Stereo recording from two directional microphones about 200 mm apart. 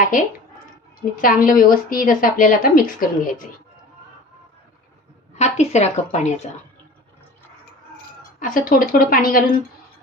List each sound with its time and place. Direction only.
0.1 s a woman's voice: 40° left (ahead or behind)
5.3 s a woman's voice: 35° left (ahead or behind)
8.4 s a woman's voice: 45° left (ahead or behind)